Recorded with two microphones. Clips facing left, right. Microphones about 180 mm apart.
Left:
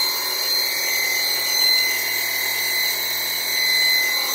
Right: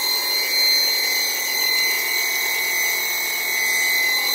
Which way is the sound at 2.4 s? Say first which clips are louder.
Right 2 dB; 20° right (ahead or behind).